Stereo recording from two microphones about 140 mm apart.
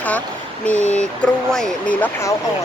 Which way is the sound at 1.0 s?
5° left (ahead or behind).